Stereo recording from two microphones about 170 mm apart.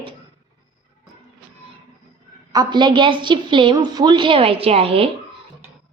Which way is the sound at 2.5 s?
25° right (ahead or behind).